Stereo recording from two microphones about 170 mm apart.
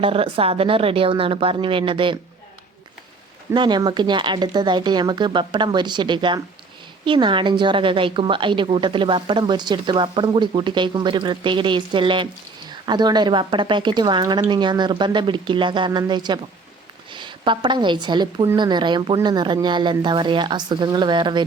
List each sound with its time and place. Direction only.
0.0 s a woman's voice: 35° right (ahead or behind)
3.5 s a woman's voice: 25° right (ahead or behind)